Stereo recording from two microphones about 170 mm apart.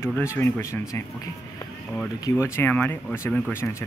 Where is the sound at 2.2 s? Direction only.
15° left (ahead or behind).